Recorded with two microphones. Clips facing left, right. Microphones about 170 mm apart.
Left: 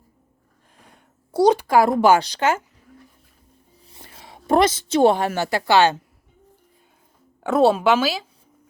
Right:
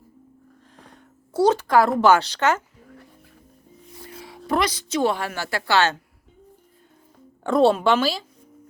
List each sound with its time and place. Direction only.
1.3 s a woman's voice: 15° left (ahead or behind)
4.0 s a sound: 20° left (ahead or behind)
4.5 s a woman's voice: 25° left (ahead or behind)
7.4 s a woman's voice: 5° left (ahead or behind)